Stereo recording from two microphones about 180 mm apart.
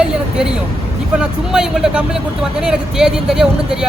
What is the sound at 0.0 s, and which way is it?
Vehicle, 5° right (ahead or behind).